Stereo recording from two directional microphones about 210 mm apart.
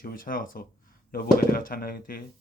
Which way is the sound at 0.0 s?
40° left (ahead or behind).